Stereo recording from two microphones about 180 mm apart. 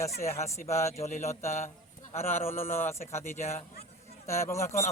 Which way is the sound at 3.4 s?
35° left (ahead or behind).